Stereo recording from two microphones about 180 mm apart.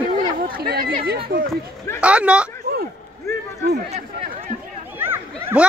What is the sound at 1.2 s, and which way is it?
Speech, 55° right (ahead or behind).